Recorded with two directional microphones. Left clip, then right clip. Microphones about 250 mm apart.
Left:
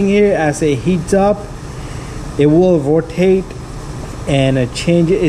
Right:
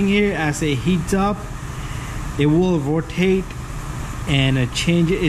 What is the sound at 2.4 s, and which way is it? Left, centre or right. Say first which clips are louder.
Speech: left 8 dB; centre.